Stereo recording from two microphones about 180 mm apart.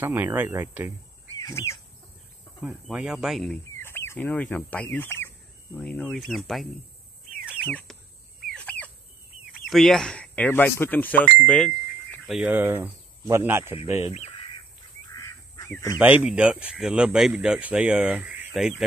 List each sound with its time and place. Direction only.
0.0 s speech: 10° right (ahead or behind)
1.4 s bird: 15° left (ahead or behind)
2.6 s speech: 5° right (ahead or behind)
3.7 s chicken: 15° left (ahead or behind)
5.8 s speech: 5° left (ahead or behind)
8.5 s chicken: 5° left (ahead or behind)
9.7 s speech: centre (ahead or behind)
14.0 s bird: 35° left (ahead or behind)
15.1 s a sound: 20° left (ahead or behind)
16.0 s speech: 10° right (ahead or behind)